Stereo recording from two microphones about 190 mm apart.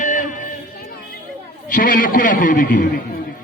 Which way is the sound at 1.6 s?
45° left (ahead or behind).